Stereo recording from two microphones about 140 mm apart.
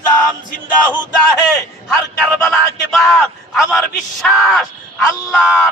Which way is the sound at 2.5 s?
5° left (ahead or behind).